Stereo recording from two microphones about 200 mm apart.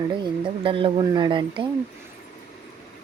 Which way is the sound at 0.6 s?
25° right (ahead or behind).